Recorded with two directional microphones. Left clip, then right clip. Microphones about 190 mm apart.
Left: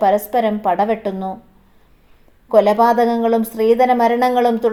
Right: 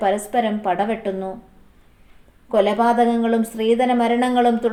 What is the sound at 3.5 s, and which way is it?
Speech, 35° left (ahead or behind).